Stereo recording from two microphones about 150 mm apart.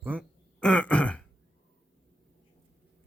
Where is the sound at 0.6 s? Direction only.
5° left (ahead or behind).